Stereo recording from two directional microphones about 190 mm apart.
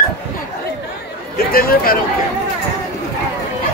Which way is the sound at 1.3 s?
50° left (ahead or behind).